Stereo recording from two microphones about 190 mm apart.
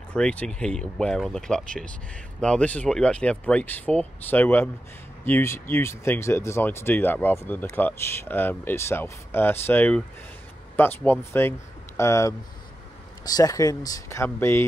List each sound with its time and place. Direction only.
0.1 s speech: 5° left (ahead or behind)